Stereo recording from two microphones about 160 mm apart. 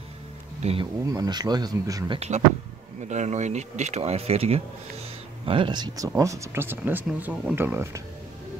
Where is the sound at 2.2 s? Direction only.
45° right (ahead or behind); by 8.0 s 15° right (ahead or behind).